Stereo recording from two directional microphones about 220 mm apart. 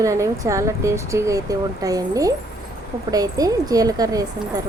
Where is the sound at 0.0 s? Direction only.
15° right (ahead or behind).